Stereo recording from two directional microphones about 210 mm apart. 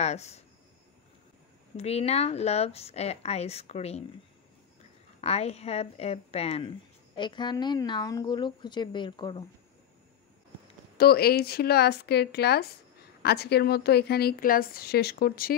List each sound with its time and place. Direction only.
0.0 s speech: 30° left (ahead or behind)
1.8 s speech: 30° left (ahead or behind)
5.2 s speech: 30° left (ahead or behind)
11.0 s a woman's voice: 45° left (ahead or behind)